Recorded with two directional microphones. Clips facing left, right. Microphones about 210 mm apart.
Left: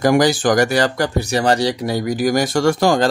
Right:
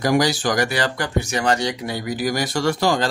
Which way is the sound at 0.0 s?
50° left (ahead or behind).